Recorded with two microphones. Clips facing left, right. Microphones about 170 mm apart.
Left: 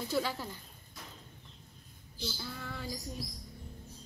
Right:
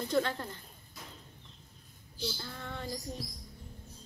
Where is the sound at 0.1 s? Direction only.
5° left (ahead or behind).